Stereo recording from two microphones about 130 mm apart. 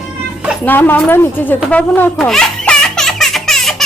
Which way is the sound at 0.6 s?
15° left (ahead or behind).